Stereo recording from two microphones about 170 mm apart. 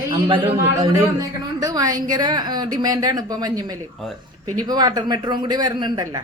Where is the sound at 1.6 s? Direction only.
20° right (ahead or behind).